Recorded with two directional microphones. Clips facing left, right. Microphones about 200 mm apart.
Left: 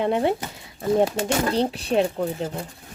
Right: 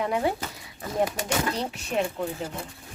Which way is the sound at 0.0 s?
25° left (ahead or behind).